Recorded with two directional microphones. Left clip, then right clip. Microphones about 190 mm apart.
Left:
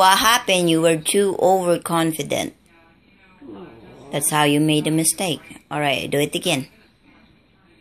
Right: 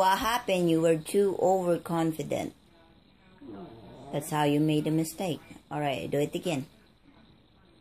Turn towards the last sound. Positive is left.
turn(degrees=5)  # may be behind; listen again after turning